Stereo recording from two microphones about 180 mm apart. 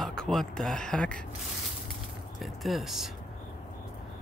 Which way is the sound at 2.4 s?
Centre (ahead or behind).